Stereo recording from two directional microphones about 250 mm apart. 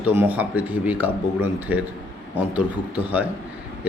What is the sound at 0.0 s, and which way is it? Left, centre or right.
A man's voice, centre.